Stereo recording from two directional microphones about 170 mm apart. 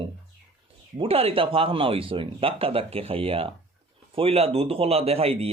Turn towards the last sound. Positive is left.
turn(degrees=-35)  # may be behind; listen again after turning